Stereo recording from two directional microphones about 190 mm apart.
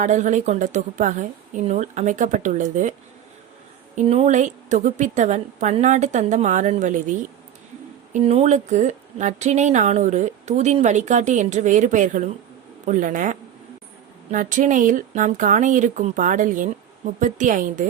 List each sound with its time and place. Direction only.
0.0 s speech: 40° right (ahead or behind)
3.9 s a woman's voice: 35° right (ahead or behind)